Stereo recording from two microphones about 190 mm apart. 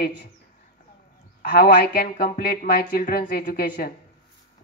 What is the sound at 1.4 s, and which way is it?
Speech, 55° left (ahead or behind).